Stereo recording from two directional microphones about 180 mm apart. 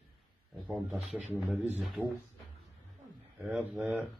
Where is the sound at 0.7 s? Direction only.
5° right (ahead or behind).